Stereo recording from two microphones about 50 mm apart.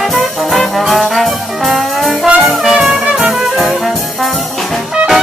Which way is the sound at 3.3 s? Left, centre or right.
Centre.